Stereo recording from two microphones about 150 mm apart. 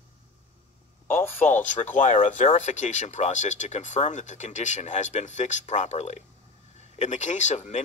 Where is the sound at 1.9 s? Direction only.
55° left (ahead or behind).